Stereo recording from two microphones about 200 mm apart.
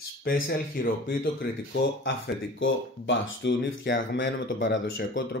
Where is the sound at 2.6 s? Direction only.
65° left (ahead or behind).